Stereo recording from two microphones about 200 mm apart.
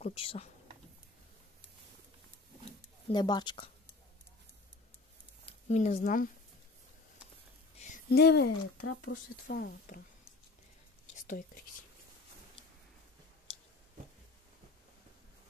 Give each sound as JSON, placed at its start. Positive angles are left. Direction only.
{"t": 0.0, "sound": "speech", "side_deg": 30}
{"t": 3.1, "sound": "speech", "side_deg": 20}
{"t": 5.4, "sound": "speech", "side_deg": 35}
{"t": 8.1, "sound": "speech", "side_deg": 55}
{"t": 8.8, "sound": "speech", "side_deg": 90}
{"t": 9.5, "sound": "speech", "side_deg": 55}
{"t": 11.1, "sound": "speech", "side_deg": 40}